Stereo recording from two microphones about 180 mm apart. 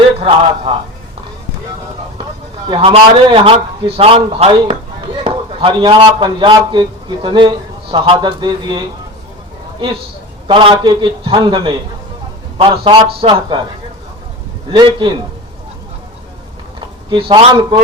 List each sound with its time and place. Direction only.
0.2 s a man's voice: 30° right (ahead or behind)
2.6 s a man's voice: 30° right (ahead or behind)
10.4 s a man's voice: 30° right (ahead or behind)
14.7 s a man's voice: 25° right (ahead or behind)
17.1 s a man's voice: 30° right (ahead or behind)